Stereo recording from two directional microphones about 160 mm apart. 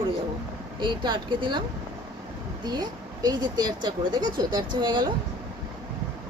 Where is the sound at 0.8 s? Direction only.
30° right (ahead or behind).